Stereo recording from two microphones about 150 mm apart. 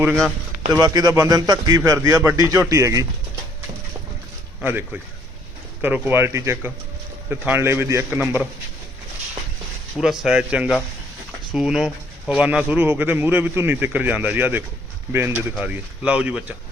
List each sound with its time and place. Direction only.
0.7 s a man's voice: 25° right (ahead or behind)
4.6 s a man's voice: 15° right (ahead or behind)
10.0 s a man's voice: 5° right (ahead or behind)